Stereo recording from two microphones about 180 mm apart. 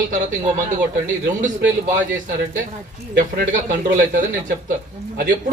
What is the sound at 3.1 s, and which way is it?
Speech, 45° right (ahead or behind).